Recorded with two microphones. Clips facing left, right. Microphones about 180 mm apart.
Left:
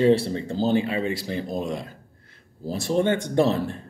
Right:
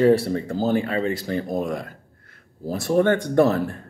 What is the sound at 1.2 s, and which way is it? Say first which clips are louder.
Speech: right 3 dB; 55° right (ahead or behind).